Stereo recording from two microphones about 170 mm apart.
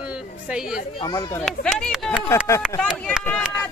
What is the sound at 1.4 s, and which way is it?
Speech, 5° left (ahead or behind).